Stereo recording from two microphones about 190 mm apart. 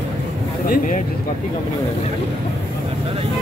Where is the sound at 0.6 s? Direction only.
50° left (ahead or behind).